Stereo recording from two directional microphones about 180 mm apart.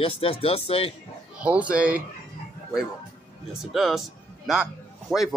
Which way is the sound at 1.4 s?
5° right (ahead or behind).